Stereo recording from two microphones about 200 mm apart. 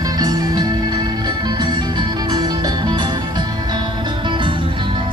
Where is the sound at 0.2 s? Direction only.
20° right (ahead or behind).